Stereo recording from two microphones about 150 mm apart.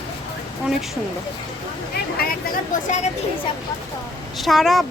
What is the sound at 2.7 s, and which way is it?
Speech, 65° left (ahead or behind).